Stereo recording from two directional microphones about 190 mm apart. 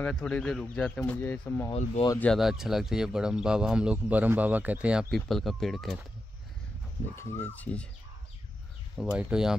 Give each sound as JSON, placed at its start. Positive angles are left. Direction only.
{"t": 0.0, "sound": "speech", "side_deg": 5}
{"t": 1.7, "sound": "speech", "side_deg": 30}
{"t": 2.1, "sound": "speech", "side_deg": 0}
{"t": 7.2, "sound": "speech", "side_deg": 10}
{"t": 8.9, "sound": "speech", "side_deg": -5}